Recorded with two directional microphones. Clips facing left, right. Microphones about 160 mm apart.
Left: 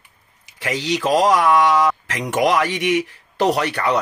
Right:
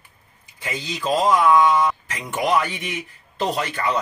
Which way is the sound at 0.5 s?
90° left.